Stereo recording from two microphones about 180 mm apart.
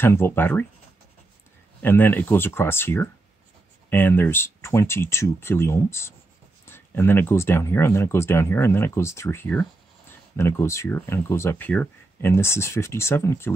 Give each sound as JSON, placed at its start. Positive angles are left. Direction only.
{"t": 0.0, "sound": "speech", "side_deg": 10}
{"t": 1.8, "sound": "speech", "side_deg": 10}